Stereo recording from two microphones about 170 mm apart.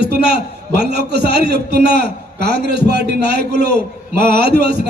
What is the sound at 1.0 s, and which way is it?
A man's voice, 75° right (ahead or behind).